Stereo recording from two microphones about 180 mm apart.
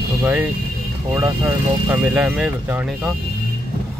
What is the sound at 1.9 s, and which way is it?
Speech, 5° right (ahead or behind).